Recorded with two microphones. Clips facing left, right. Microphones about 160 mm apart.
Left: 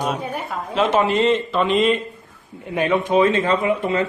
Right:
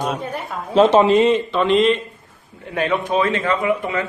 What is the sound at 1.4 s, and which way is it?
Speech, centre (ahead or behind).